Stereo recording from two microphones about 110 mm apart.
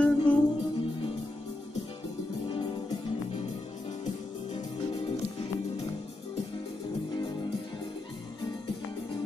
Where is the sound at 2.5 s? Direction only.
45° left (ahead or behind).